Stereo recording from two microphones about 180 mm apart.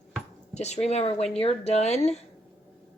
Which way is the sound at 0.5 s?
40° left (ahead or behind).